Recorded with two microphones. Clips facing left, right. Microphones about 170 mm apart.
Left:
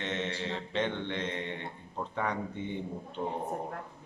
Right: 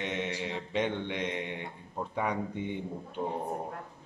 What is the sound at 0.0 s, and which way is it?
Mantra, 10° right (ahead or behind).